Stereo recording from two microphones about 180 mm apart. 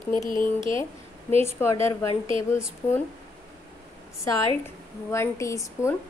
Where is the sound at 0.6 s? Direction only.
30° right (ahead or behind).